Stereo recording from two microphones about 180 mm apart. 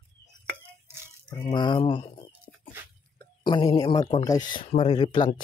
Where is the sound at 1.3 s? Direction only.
25° left (ahead or behind).